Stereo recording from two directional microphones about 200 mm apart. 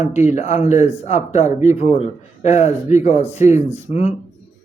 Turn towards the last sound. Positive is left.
turn(degrees=35)  # may be behind; listen again after turning